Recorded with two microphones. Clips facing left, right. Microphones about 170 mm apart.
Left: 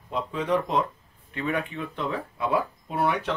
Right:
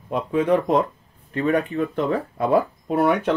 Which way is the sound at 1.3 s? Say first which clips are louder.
Right 8 dB; 40° right (ahead or behind).